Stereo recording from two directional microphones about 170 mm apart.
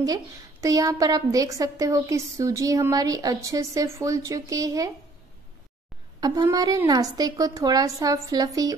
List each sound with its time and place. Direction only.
0.0 s a woman's voice: 20° right (ahead or behind)
6.2 s a woman's voice: 20° right (ahead or behind)